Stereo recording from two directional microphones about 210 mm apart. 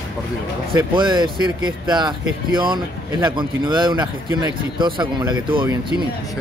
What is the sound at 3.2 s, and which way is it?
A man's voice, 20° right (ahead or behind).